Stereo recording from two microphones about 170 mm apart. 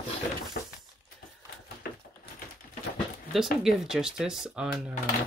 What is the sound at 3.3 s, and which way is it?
Speech, centre (ahead or behind).